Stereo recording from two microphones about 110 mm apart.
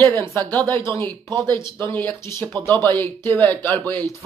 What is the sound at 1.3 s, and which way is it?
Speech, 40° right (ahead or behind).